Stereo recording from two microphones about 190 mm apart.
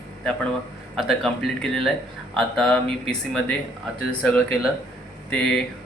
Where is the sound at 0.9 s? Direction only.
Centre (ahead or behind).